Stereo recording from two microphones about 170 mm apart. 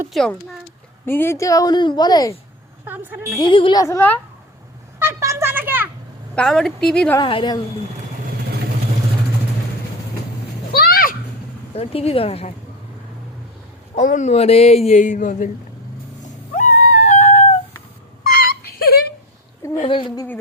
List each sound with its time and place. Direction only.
0.1 s a woman's voice: centre (ahead or behind)
1.0 s a woman's voice: 15° left (ahead or behind)
2.8 s a woman's voice: 10° right (ahead or behind)
3.5 s a woman's voice: 25° left (ahead or behind)
4.9 s a sound: 15° right (ahead or behind)
6.3 s a woman's voice: 5° left (ahead or behind)
7.2 s a woman's voice: 30° left (ahead or behind)
10.7 s a sound: 65° left (ahead or behind)
11.7 s speech: 35° left (ahead or behind)
13.9 s speech: 45° left (ahead or behind)
16.6 s howl: 50° left (ahead or behind)
18.2 s wail: 60° left (ahead or behind)
19.9 s a woman's voice: 30° left (ahead or behind)